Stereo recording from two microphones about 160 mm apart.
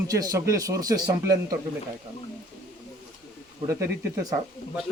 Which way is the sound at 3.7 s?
20° right (ahead or behind).